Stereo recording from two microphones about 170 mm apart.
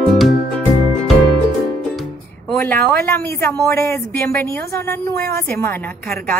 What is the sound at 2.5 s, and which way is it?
A woman's voice, 10° left (ahead or behind).